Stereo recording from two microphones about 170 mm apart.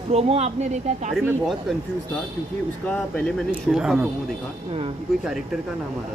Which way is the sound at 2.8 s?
5° left (ahead or behind).